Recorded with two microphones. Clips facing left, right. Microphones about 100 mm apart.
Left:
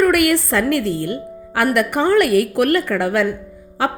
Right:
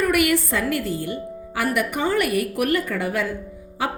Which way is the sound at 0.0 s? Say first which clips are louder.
Left 5 dB; 60° left (ahead or behind).